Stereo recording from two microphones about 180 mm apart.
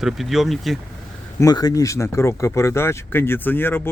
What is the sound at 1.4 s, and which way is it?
Speech, 20° left (ahead or behind).